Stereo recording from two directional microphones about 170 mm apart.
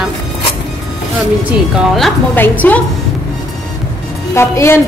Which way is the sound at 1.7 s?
Centre (ahead or behind).